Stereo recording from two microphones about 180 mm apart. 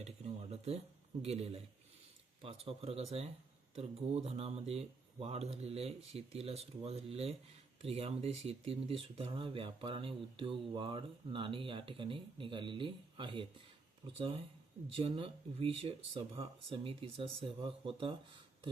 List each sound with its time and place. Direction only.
0.5 s speech: 35° right (ahead or behind)